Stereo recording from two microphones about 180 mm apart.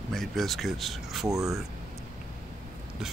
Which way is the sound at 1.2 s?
20° right (ahead or behind).